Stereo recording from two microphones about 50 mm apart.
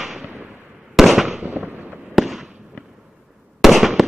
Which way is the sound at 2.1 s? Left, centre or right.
Centre.